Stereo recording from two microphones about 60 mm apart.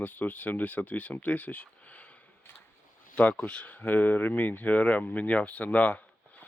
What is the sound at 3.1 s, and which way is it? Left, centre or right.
Speech, left.